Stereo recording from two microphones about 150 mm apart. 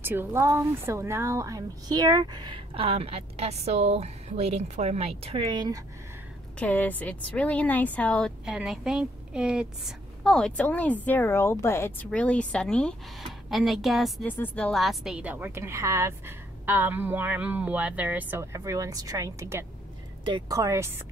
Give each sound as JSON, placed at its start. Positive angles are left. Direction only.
{"t": 0.0, "sound": "a woman's voice", "side_deg": -15}
{"t": 6.6, "sound": "a woman's voice", "side_deg": 10}
{"t": 8.5, "sound": "a woman's voice", "side_deg": -5}
{"t": 14.2, "sound": "a woman's voice", "side_deg": 10}